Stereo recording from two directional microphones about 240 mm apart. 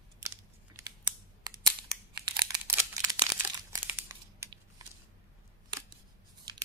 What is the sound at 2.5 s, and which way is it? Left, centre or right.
Crumpling, centre.